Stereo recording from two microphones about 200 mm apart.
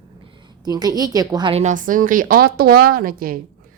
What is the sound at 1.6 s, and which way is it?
Speech, 40° right (ahead or behind).